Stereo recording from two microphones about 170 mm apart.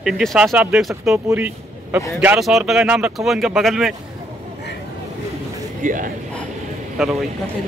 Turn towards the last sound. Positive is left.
turn(degrees=0)  # may be behind; listen again after turning